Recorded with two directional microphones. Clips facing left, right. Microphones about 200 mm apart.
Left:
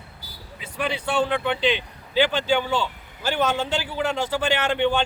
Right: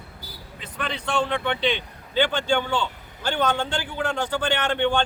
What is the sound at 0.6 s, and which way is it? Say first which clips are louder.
A man's voice: left 4 dB; 10° left (ahead or behind).